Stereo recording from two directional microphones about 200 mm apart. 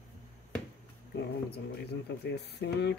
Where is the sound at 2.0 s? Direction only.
55° left (ahead or behind).